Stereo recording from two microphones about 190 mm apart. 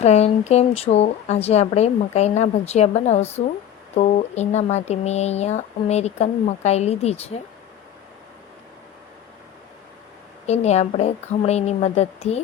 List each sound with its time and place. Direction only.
0.0 s speech: 35° left (ahead or behind)
10.4 s speech: 35° left (ahead or behind)